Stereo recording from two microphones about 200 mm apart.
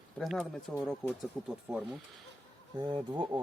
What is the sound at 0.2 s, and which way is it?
Speech, centre (ahead or behind).